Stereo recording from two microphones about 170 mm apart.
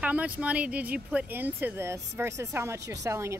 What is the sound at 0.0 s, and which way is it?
Speech, 10° right (ahead or behind).